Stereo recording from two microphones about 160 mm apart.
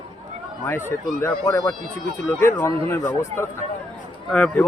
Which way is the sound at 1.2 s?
20° left (ahead or behind).